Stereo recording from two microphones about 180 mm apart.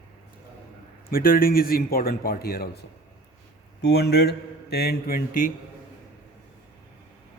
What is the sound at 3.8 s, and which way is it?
A man's voice, 65° left (ahead or behind).